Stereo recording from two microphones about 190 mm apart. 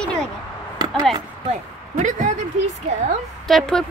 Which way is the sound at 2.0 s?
40° right (ahead or behind).